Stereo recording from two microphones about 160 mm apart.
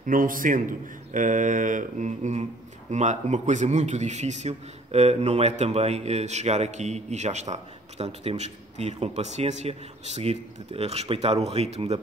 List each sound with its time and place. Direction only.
0.0 s a man's voice: 60° right (ahead or behind); by 12.0 s 40° right (ahead or behind)